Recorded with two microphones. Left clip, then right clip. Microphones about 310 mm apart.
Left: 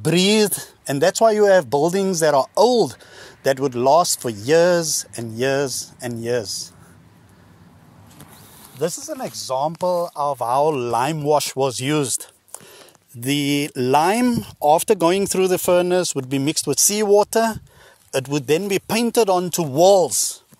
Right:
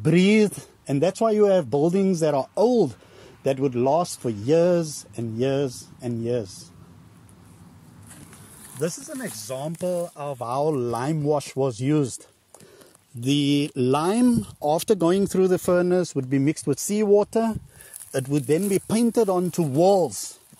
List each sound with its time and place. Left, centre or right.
0.0 s speech: left
9.3 s speech: centre
10.2 s speech: left
15.3 s speech: left
15.9 s speech: left
16.3 s speech: left
16.7 s speech: left
19.1 s speech: left